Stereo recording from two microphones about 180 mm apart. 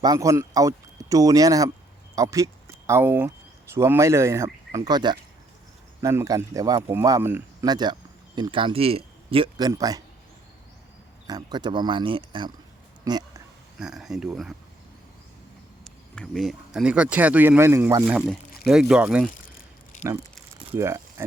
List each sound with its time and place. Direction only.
0.0 s speech: 20° right (ahead or behind)
11.3 s speech: 20° right (ahead or behind)
13.7 s speech: 5° right (ahead or behind)
15.8 s speech: 5° left (ahead or behind); by 18.0 s 15° right (ahead or behind)
18.0 s speech: centre (ahead or behind)
19.5 s a sound: 45° left (ahead or behind)
20.7 s speech: 15° right (ahead or behind)